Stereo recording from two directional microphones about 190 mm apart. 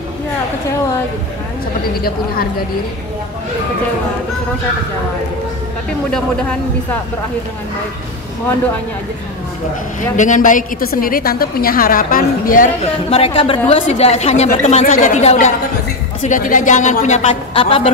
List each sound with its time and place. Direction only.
2.0 s a woman's voice: 50° left (ahead or behind)
10.1 s a woman's voice: 40° left (ahead or behind)
12.9 s a woman's voice: 30° left (ahead or behind)